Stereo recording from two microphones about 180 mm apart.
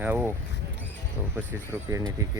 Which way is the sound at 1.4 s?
15° right (ahead or behind).